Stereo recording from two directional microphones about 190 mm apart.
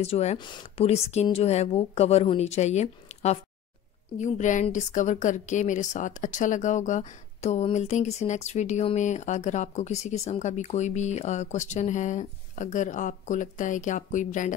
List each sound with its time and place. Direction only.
0.0 s a woman's voice: 35° left (ahead or behind)